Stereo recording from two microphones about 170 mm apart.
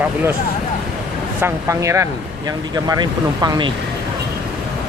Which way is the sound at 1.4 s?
15° right (ahead or behind).